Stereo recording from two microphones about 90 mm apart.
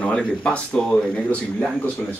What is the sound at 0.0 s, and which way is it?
Speech, 10° left (ahead or behind).